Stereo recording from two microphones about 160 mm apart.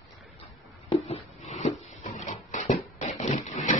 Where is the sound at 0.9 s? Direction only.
40° left (ahead or behind).